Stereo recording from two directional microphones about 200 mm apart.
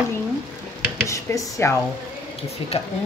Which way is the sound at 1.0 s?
15° left (ahead or behind).